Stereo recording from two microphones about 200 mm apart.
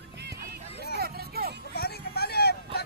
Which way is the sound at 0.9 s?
50° right (ahead or behind).